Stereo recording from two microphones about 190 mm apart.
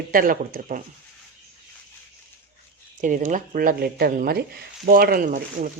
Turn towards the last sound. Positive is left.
turn(degrees=-45)  # may be behind; listen again after turning